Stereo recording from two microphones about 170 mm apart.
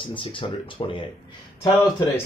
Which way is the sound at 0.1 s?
30° left (ahead or behind).